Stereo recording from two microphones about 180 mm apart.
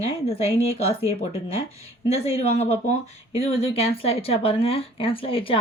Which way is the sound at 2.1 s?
35° left (ahead or behind).